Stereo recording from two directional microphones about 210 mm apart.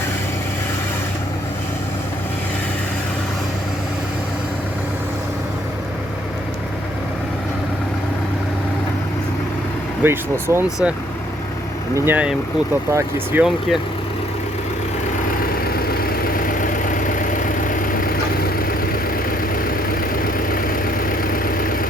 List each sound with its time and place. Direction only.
10.0 s speech: 10° right (ahead or behind)
11.9 s speech: 10° right (ahead or behind)
16.0 s vehicle: 45° left (ahead or behind)
19.6 s vehicle: 45° left (ahead or behind)